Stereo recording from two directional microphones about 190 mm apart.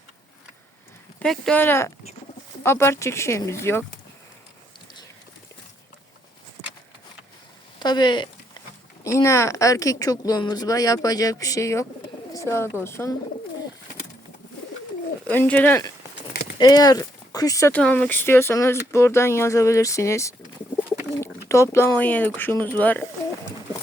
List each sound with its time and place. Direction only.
1.2 s speech: 5° left (ahead or behind)
7.8 s speech: 20° left (ahead or behind)
15.3 s speech: 10° left (ahead or behind)
16.3 s a sound: 55° left (ahead or behind)
16.6 s speech: 20° left (ahead or behind)
17.7 s speech: 5° left (ahead or behind)